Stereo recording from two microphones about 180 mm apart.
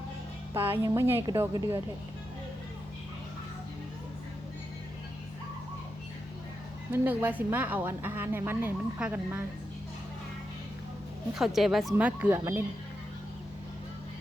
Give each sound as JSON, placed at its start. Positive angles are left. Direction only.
{"t": 0.5, "sound": "a woman's voice", "side_deg": -15}
{"t": 6.9, "sound": "a woman's voice", "side_deg": -10}
{"t": 11.3, "sound": "a woman's voice", "side_deg": 0}